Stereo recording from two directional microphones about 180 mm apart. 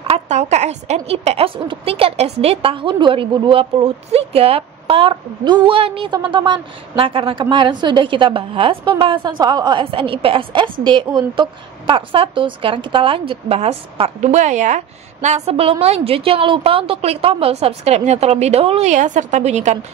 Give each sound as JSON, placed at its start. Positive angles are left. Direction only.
{"t": 0.0, "sound": "a woman's voice", "side_deg": -35}